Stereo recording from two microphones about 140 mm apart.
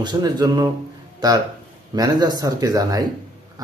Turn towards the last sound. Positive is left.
turn(degrees=-25)  # may be behind; listen again after turning